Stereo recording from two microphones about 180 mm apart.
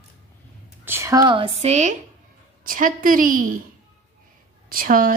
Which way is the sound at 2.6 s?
50° right (ahead or behind).